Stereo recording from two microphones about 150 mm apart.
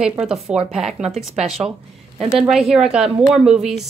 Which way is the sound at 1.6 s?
30° right (ahead or behind).